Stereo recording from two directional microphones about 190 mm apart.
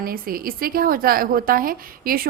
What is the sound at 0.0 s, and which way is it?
A woman's voice, 50° right (ahead or behind).